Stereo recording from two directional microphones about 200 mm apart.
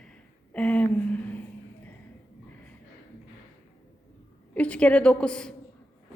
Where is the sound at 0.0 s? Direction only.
5° left (ahead or behind).